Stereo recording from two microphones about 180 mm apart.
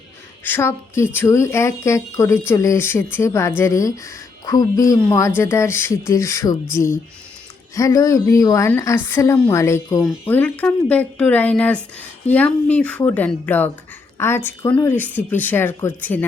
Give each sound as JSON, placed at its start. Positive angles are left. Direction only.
{"t": 0.4, "sound": "speech", "side_deg": 15}